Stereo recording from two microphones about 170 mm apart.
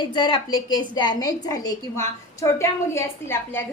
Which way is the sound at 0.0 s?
25° left (ahead or behind).